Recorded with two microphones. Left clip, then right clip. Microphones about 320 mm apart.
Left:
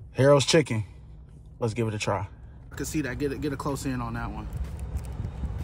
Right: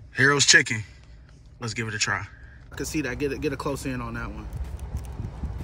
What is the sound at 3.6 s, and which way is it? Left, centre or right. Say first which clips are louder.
Speech: right 1 dB; centre.